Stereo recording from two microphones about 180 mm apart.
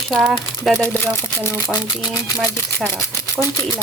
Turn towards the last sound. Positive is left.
turn(degrees=15)  # may be behind; listen again after turning